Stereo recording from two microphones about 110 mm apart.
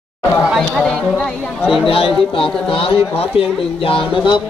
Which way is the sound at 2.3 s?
55° left (ahead or behind).